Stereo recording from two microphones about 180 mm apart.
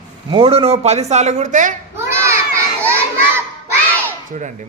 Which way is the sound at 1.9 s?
15° right (ahead or behind).